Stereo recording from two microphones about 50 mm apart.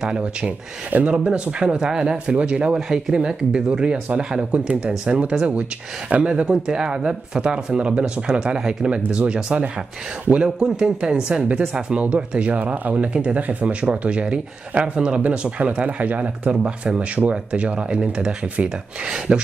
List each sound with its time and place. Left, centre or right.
0.0 s speech: centre
0.8 s speech: right
1.1 s speech: right